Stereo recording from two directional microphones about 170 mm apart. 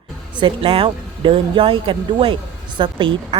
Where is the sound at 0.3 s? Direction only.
30° right (ahead or behind).